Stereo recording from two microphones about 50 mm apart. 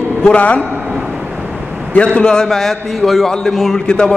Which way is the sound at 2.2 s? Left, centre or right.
Centre.